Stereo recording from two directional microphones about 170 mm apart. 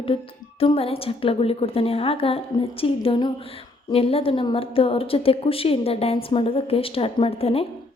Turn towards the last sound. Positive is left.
turn(degrees=35)  # may be behind; listen again after turning